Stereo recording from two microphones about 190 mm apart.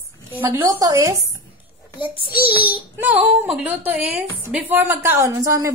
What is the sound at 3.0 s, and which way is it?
A woman's voice, 10° right (ahead or behind).